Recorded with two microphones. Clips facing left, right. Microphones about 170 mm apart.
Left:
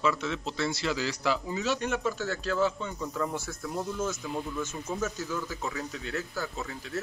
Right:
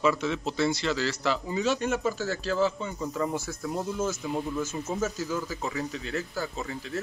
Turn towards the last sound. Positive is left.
turn(degrees=-15)  # may be behind; listen again after turning